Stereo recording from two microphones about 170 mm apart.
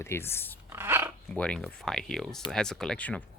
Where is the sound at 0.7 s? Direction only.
15° right (ahead or behind).